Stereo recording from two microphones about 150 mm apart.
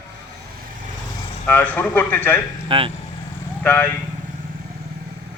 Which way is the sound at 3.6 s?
10° left (ahead or behind).